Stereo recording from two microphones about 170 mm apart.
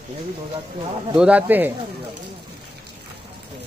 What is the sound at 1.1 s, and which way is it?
Speech, 10° right (ahead or behind).